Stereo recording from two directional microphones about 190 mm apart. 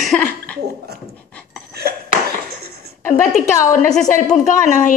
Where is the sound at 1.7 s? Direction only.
55° right (ahead or behind).